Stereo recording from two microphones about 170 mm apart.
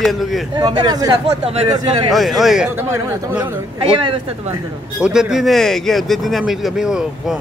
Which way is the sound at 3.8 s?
30° right (ahead or behind).